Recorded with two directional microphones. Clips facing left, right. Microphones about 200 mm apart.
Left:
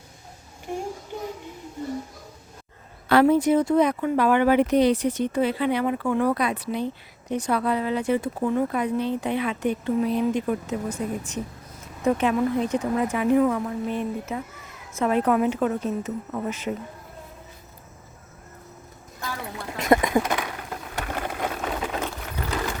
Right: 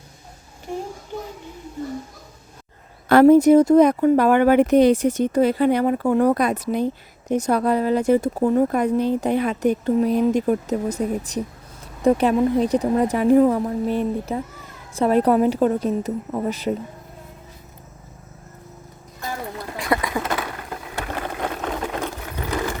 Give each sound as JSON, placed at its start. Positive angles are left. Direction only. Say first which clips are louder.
{"t": 3.1, "sound": "speech", "louder": "right 7 dB", "side_deg": -45}
{"t": 19.8, "sound": "duck", "louder": "left 4 dB", "side_deg": 20}
{"t": 20.4, "sound": "a sound", "louder": "right 2 dB", "side_deg": 0}
{"t": 22.0, "sound": "sewing machine", "louder": "right 2 dB", "side_deg": -15}